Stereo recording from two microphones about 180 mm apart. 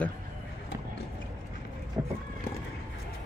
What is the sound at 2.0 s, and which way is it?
Run, 15° right (ahead or behind).